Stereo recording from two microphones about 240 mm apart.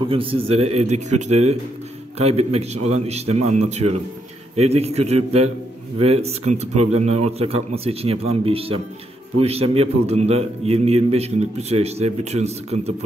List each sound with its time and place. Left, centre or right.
0.0 s a man's voice: right